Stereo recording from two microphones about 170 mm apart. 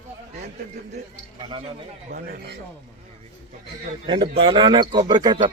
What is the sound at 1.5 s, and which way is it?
Speech, 30° right (ahead or behind).